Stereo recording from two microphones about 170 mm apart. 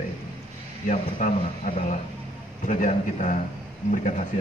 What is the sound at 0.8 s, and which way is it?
A man's voice, 50° left (ahead or behind).